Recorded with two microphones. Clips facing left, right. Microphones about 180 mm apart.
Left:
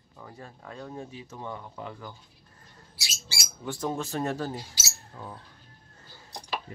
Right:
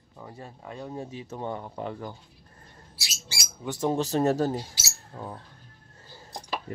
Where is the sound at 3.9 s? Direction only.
35° right (ahead or behind).